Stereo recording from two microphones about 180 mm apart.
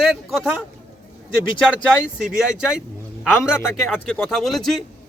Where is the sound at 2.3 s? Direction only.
5° right (ahead or behind).